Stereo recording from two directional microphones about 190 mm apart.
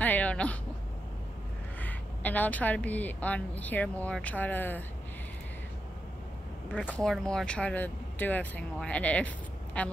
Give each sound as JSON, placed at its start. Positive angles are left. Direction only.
{"t": 0.0, "sound": "a sound", "side_deg": 10}
{"t": 1.8, "sound": "a woman's voice", "side_deg": 10}
{"t": 6.9, "sound": "a woman's voice", "side_deg": 5}